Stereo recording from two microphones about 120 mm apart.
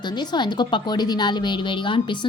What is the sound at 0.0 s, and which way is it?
A woman's voice, 40° left (ahead or behind).